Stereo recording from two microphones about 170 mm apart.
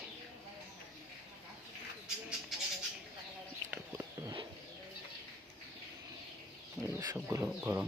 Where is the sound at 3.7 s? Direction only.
20° right (ahead or behind).